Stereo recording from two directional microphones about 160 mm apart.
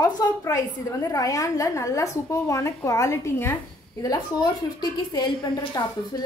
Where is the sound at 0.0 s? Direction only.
20° left (ahead or behind).